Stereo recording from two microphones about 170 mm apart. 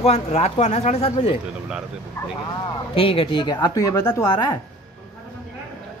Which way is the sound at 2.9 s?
30° left (ahead or behind).